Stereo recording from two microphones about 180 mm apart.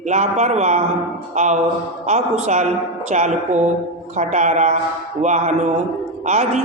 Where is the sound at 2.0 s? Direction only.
40° right (ahead or behind).